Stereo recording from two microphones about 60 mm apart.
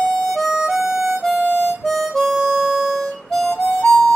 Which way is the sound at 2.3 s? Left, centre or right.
Centre.